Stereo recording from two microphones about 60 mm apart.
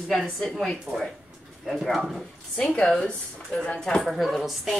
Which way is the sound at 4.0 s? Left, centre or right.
Centre.